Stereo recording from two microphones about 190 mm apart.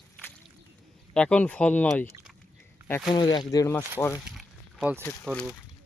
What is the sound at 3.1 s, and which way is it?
Speech, 20° left (ahead or behind).